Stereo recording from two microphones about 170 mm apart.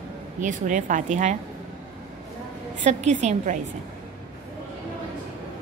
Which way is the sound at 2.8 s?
45° right (ahead or behind).